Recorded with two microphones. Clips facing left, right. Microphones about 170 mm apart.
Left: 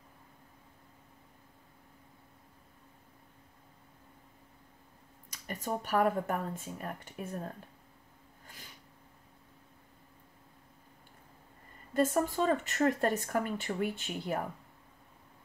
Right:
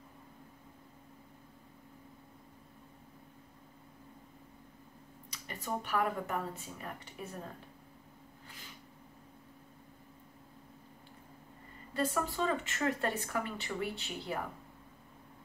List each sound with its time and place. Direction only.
5.3 s speech: 45° left (ahead or behind)
11.9 s speech: 45° left (ahead or behind)